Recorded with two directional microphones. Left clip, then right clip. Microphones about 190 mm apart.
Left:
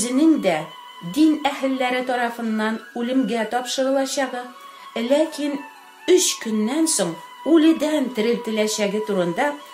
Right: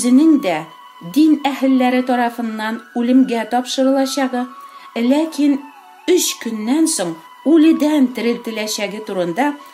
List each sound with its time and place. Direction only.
0.0 s speech: 45° right (ahead or behind)